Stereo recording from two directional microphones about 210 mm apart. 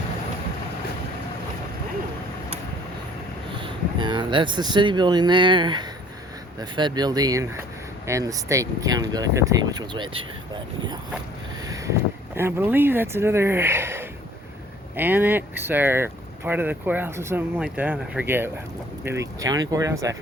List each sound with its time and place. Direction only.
3.5 s speech: 20° right (ahead or behind)